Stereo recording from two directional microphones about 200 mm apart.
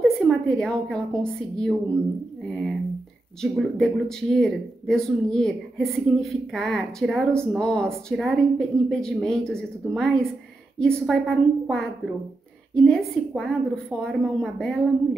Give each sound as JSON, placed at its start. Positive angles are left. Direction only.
{"t": 0.0, "sound": "a woman's voice", "side_deg": 5}